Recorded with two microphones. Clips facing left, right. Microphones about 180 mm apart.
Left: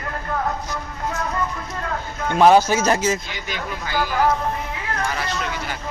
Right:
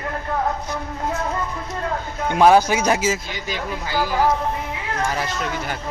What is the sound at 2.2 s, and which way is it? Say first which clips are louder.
Speech: even; 10° right (ahead or behind).